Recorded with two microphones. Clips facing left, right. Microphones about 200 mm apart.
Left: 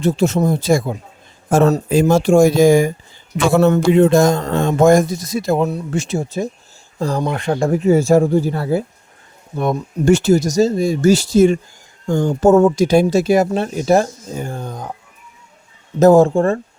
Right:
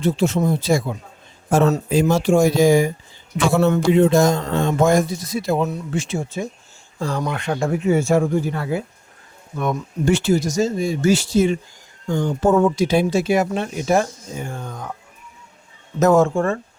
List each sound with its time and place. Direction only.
0.0 s speech: 45° left (ahead or behind)
10.1 s speech: 45° left (ahead or behind)
16.0 s speech: 35° left (ahead or behind)